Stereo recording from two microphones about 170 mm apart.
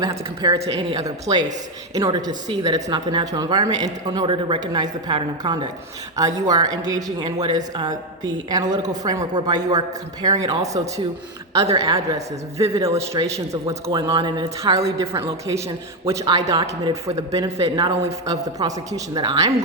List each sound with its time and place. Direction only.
0.0 s a woman's voice: 20° right (ahead or behind)
0.6 s a woman's voice: 30° right (ahead or behind)
14.1 s a woman's voice: 30° right (ahead or behind)
16.0 s a woman's voice: 20° right (ahead or behind)